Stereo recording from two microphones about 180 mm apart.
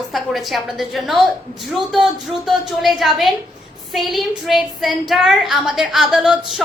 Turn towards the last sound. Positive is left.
turn(degrees=0)  # may be behind; listen again after turning